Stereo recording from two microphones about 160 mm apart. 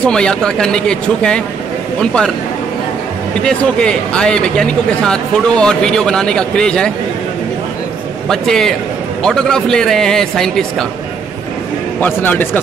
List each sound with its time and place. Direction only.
0.0 s a man's voice: 5° left (ahead or behind)
3.4 s a man's voice: 5° left (ahead or behind)
8.3 s a man's voice: 5° left (ahead or behind)
12.0 s a man's voice: 10° left (ahead or behind)